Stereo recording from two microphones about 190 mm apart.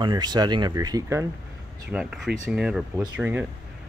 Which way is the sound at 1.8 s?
5° right (ahead or behind).